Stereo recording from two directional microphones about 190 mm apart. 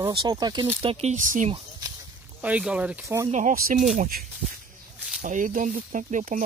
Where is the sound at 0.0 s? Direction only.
25° right (ahead or behind).